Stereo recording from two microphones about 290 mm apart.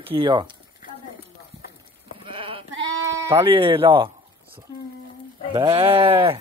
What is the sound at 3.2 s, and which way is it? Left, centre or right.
Speech, centre.